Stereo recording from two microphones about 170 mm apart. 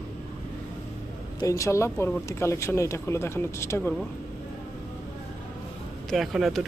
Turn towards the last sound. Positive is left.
turn(degrees=0)  # may be behind; listen again after turning